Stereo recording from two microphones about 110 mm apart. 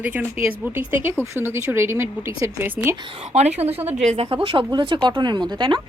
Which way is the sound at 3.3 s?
75° right (ahead or behind).